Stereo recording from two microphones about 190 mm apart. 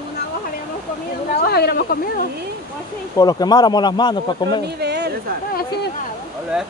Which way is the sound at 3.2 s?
20° left (ahead or behind).